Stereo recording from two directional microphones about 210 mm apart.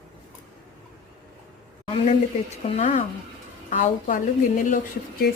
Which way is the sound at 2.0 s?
30° left (ahead or behind).